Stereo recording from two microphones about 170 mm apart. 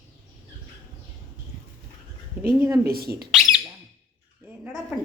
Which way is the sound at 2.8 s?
65° right (ahead or behind).